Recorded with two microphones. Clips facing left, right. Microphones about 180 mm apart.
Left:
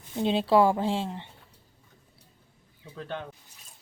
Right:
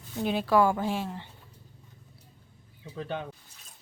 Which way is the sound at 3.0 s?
5° right (ahead or behind).